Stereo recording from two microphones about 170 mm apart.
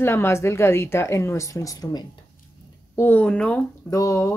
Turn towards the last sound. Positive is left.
turn(degrees=20)  # may be behind; listen again after turning